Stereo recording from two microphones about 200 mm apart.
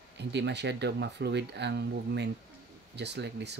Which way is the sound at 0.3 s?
60° right (ahead or behind).